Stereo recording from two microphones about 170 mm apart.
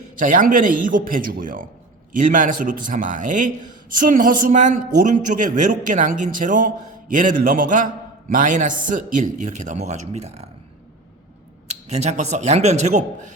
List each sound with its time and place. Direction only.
0.2 s a man's voice: 50° right (ahead or behind)
11.9 s a man's voice: 40° right (ahead or behind)